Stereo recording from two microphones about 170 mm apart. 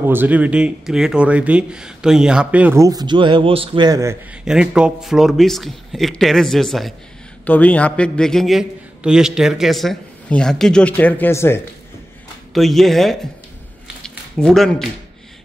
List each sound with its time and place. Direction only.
0.0 s speech: 10° right (ahead or behind)
2.8 s a man's voice: 20° right (ahead or behind)
4.5 s a man's voice: 5° right (ahead or behind); by 11.6 s 15° left (ahead or behind)
12.5 s a man's voice: centre (ahead or behind)
14.0 s a sound: 5° left (ahead or behind)